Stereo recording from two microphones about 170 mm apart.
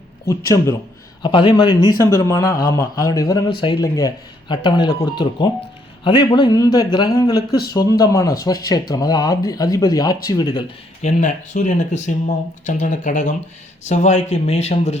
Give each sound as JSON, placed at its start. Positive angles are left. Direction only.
{"t": 0.3, "sound": "speech", "side_deg": 20}
{"t": 11.0, "sound": "speech", "side_deg": 45}